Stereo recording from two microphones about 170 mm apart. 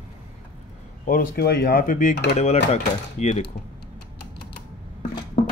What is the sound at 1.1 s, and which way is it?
Speech, 60° left (ahead or behind).